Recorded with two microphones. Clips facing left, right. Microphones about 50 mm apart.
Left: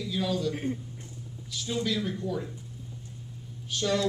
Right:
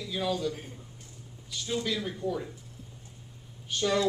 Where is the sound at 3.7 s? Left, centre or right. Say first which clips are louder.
Right 1 dB; centre.